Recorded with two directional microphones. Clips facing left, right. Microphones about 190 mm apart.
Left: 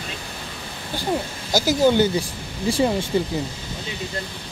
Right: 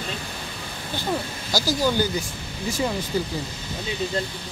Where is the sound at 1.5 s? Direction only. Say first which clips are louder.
Left 5 dB; 20° left (ahead or behind).